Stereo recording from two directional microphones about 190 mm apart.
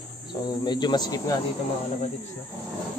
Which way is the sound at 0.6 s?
20° left (ahead or behind).